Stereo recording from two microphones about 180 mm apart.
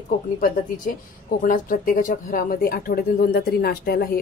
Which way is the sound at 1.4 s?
50° left (ahead or behind).